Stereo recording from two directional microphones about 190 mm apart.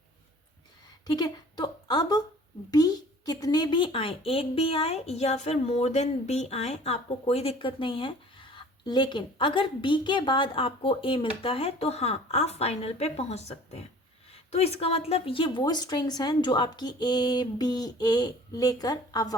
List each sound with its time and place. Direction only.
1.0 s a woman's voice: 20° left (ahead or behind)